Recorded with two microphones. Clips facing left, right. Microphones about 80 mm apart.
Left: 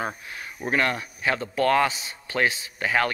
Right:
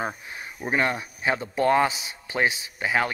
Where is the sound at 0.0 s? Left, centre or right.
Right.